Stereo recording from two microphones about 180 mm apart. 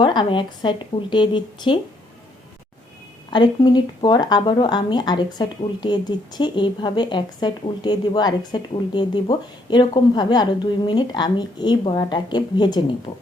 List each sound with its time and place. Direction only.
0.0 s speech: 25° left (ahead or behind)
3.2 s speech: 25° left (ahead or behind)
13.1 s speech: 35° left (ahead or behind)